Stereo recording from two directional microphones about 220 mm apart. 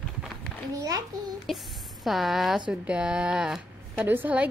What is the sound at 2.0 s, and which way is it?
A woman's voice, centre (ahead or behind).